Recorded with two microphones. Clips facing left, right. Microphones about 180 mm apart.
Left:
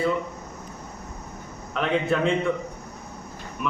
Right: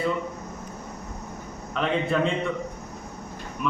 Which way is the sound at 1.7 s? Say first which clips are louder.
Left 2 dB; centre (ahead or behind).